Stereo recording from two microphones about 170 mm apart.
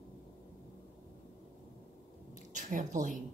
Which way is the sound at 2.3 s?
45° right (ahead or behind).